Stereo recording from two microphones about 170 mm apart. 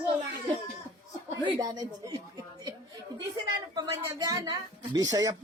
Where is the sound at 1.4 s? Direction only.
25° right (ahead or behind).